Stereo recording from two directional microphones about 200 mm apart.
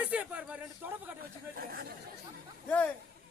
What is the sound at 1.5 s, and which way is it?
Speech, 50° right (ahead or behind).